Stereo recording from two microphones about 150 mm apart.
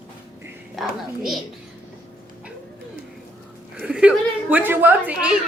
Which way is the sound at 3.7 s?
5° right (ahead or behind).